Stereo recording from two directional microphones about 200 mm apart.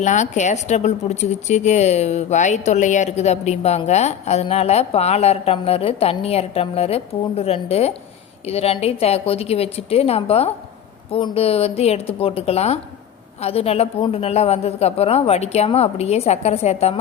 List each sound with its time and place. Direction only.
0.0 s a woman's voice: 35° left (ahead or behind)